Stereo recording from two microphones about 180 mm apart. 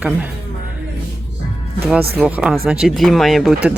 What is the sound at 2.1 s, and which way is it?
A woman's voice, 5° right (ahead or behind).